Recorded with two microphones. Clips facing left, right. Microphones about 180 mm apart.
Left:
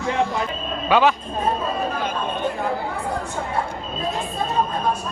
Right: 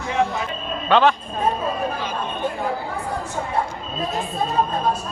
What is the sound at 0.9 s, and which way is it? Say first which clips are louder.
Speech: right 1 dB; 5° left (ahead or behind).